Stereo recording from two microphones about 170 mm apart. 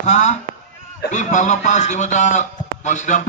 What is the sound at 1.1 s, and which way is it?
A man's voice, 45° left (ahead or behind).